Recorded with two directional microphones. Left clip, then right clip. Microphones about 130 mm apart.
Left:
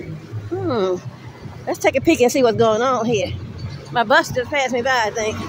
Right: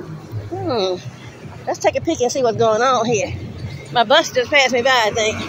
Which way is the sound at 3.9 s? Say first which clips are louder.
Right 2 dB; 30° left (ahead or behind).